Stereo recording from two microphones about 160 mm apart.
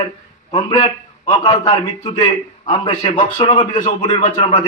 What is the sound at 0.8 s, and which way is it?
A man's voice, 40° left (ahead or behind).